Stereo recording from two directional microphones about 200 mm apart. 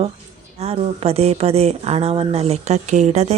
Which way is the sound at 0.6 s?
30° right (ahead or behind).